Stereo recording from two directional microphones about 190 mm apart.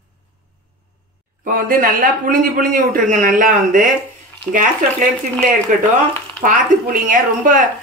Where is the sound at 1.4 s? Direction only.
45° right (ahead or behind).